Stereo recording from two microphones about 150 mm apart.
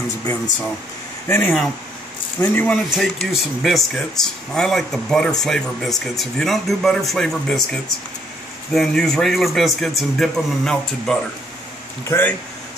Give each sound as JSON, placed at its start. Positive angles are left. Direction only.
{"t": 1.2, "sound": "speech", "side_deg": 15}
{"t": 2.7, "sound": "speech", "side_deg": 0}